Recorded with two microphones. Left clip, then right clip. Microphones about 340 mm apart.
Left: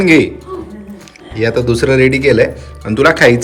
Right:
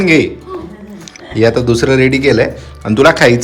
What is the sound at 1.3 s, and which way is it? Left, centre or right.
Speech, centre.